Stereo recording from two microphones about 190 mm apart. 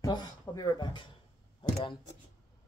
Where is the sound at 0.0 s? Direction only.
20° left (ahead or behind).